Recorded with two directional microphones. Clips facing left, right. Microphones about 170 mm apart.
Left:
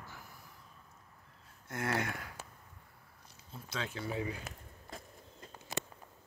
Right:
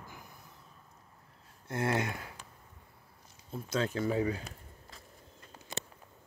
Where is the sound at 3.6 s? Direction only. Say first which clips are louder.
Right 8 dB; 45° right (ahead or behind).